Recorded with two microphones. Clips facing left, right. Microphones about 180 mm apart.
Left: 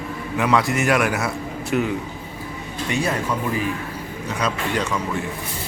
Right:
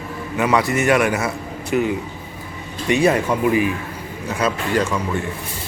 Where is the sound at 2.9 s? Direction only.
15° right (ahead or behind).